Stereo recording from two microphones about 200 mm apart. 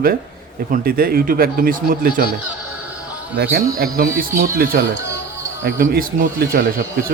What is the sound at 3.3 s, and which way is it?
Speech, 50° right (ahead or behind).